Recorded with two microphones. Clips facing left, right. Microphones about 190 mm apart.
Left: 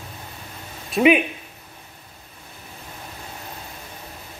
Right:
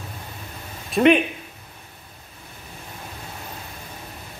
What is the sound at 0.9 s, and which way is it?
Speech, 5° left (ahead or behind).